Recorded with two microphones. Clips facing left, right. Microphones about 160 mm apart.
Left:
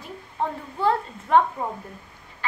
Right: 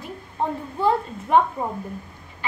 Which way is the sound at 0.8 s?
15° right (ahead or behind).